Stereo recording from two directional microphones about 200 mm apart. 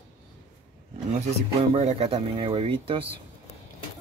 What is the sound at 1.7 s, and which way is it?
Speech, 30° right (ahead or behind).